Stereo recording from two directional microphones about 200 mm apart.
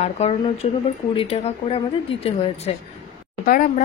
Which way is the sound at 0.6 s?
35° left (ahead or behind).